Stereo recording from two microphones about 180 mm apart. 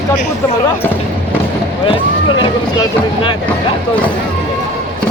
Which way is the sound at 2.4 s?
25° left (ahead or behind).